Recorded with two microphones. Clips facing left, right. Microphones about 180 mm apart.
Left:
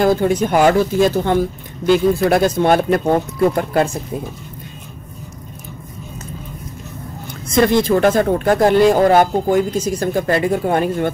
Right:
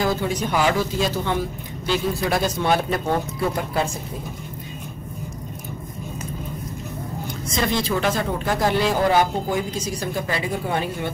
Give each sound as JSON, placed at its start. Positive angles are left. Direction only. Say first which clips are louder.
{"t": 0.0, "sound": "speech", "louder": "left 8 dB", "side_deg": 50}
{"t": 7.4, "sound": "speech", "louder": "left 10 dB", "side_deg": 55}